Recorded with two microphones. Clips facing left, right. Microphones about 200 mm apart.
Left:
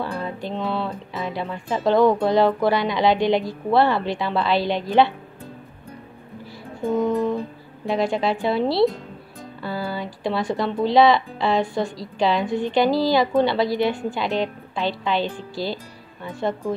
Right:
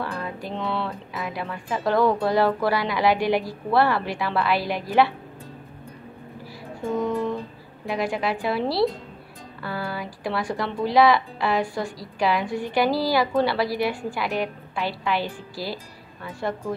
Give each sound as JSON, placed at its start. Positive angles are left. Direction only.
{"t": 0.0, "sound": "speech", "side_deg": 25}
{"t": 7.0, "sound": "speech", "side_deg": 20}